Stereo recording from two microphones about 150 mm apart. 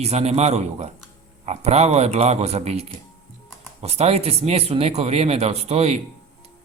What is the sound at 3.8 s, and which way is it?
Speech, 45° right (ahead or behind).